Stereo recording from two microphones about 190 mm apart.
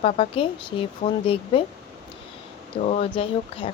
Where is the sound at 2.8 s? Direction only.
35° left (ahead or behind).